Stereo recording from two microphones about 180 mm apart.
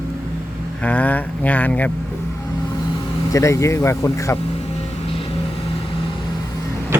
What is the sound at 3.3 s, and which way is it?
Speech, 15° left (ahead or behind).